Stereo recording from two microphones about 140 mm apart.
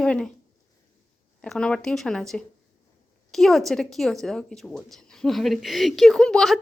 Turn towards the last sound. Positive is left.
turn(degrees=5)  # may be behind; listen again after turning